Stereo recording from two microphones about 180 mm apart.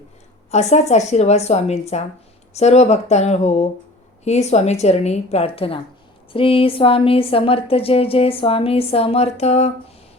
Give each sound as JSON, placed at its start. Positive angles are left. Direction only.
{"t": 0.5, "sound": "a woman's voice", "side_deg": 40}